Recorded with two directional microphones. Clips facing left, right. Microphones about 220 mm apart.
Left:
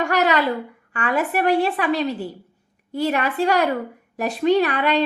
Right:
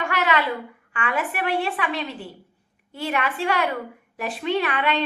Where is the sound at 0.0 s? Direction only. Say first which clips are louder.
Left 4 dB; 40° left (ahead or behind).